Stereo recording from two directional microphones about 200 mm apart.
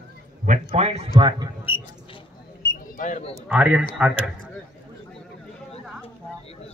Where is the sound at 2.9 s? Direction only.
40° left (ahead or behind).